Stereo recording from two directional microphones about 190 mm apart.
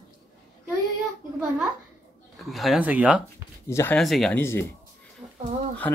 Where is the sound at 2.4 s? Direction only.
Centre (ahead or behind).